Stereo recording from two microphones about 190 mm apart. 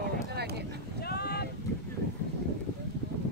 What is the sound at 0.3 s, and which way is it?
Vehicle, 60° right (ahead or behind).